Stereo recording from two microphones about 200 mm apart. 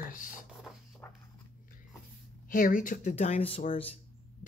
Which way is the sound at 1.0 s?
10° left (ahead or behind).